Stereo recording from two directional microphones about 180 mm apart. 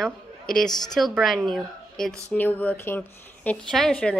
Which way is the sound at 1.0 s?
Centre (ahead or behind).